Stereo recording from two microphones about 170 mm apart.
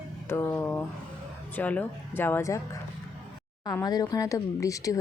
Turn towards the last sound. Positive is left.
turn(degrees=20)  # may be behind; listen again after turning